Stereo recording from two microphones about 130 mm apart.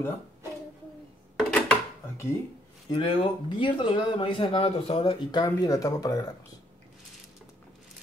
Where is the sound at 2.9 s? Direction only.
40° left (ahead or behind).